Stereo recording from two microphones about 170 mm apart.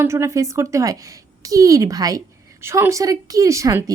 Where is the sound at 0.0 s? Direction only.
15° right (ahead or behind).